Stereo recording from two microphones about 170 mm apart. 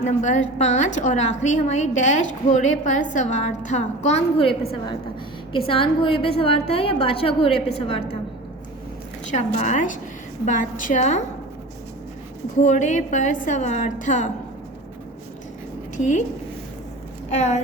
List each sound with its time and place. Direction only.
0.0 s a woman's voice: 45° left (ahead or behind)
9.3 s a woman's voice: 45° left (ahead or behind)
12.5 s a woman's voice: 45° left (ahead or behind)
16.0 s a woman's voice: 45° left (ahead or behind)
17.3 s a woman's voice: 45° left (ahead or behind)